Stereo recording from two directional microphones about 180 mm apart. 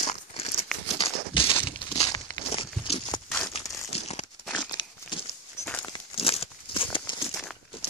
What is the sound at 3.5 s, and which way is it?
Crumpling, 35° left (ahead or behind).